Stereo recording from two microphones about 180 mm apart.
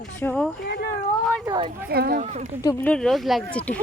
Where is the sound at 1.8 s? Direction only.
60° right (ahead or behind).